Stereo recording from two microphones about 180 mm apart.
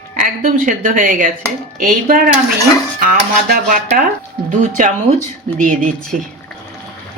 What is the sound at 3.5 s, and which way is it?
Speech, 55° right (ahead or behind).